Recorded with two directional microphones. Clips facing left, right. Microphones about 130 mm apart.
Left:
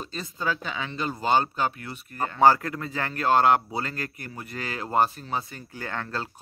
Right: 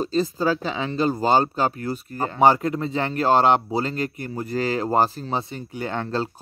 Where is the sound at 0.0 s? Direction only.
30° right (ahead or behind).